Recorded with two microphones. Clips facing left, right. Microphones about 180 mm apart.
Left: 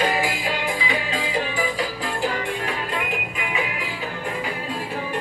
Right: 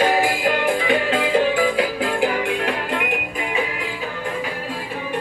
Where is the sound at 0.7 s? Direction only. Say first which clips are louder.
Right 7 dB; 55° right (ahead or behind).